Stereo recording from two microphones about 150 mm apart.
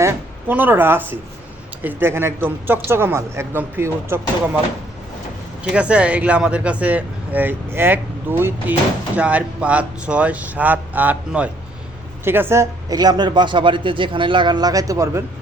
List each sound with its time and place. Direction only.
0.0 s speech: 15° right (ahead or behind)
5.7 s speech: 10° right (ahead or behind)